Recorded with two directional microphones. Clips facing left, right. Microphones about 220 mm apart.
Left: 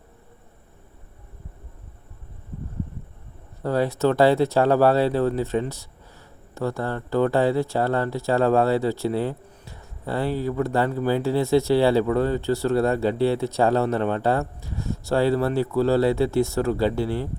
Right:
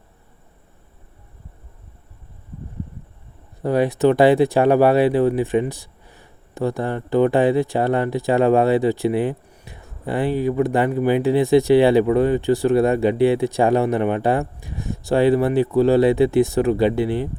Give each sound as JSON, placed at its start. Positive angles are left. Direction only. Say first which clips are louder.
{"t": 3.6, "sound": "speech", "louder": "right 4 dB", "side_deg": -15}